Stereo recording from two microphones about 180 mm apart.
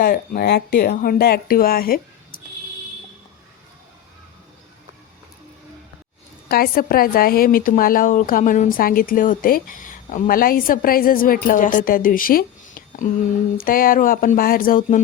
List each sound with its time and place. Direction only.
0.0 s speech: 55° left (ahead or behind)
6.5 s a woman's voice: 55° left (ahead or behind)